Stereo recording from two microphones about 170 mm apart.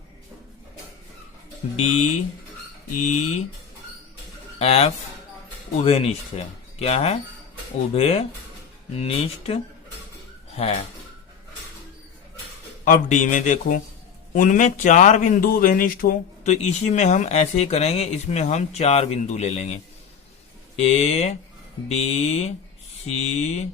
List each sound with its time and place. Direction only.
1.7 s speech: 40° left (ahead or behind)
4.6 s speech: 35° left (ahead or behind)
10.6 s speech: 35° left (ahead or behind)
12.8 s speech: 50° left (ahead or behind)
15.4 s speech: 60° left (ahead or behind)
16.4 s speech: 40° left (ahead or behind)